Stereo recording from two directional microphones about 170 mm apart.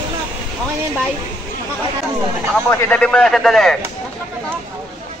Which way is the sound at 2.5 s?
5° left (ahead or behind).